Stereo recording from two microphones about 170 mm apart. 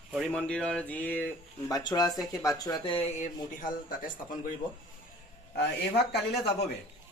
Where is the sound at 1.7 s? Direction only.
25° left (ahead or behind).